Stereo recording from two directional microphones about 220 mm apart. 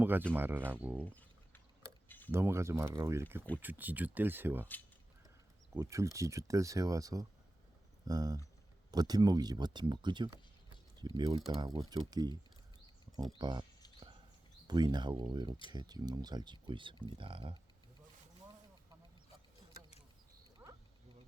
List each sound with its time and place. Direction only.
0.0 s speech: 10° right (ahead or behind)
2.0 s tick-tock: 10° left (ahead or behind)
2.3 s speech: 10° right (ahead or behind)
5.7 s speech: 15° right (ahead or behind)
13.4 s speech: 20° right (ahead or behind)
14.7 s speech: 20° right (ahead or behind)
20.6 s insect: 10° right (ahead or behind)